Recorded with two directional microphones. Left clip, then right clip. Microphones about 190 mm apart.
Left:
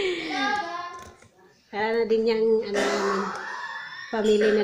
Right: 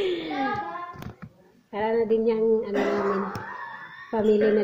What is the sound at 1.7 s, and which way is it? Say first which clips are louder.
A woman's voice: even; 5° left (ahead or behind).